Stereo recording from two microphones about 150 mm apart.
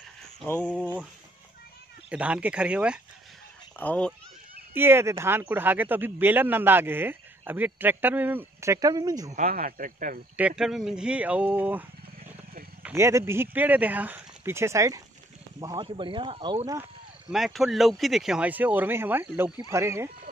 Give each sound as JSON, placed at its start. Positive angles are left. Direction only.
{"t": 2.0, "sound": "a man's voice", "side_deg": -5}
{"t": 3.7, "sound": "speech", "side_deg": 10}
{"t": 4.7, "sound": "a man's voice", "side_deg": -15}
{"t": 9.3, "sound": "speech", "side_deg": -65}
{"t": 10.3, "sound": "a man's voice", "side_deg": -5}
{"t": 12.8, "sound": "a man's voice", "side_deg": -20}
{"t": 17.3, "sound": "a man's voice", "side_deg": 0}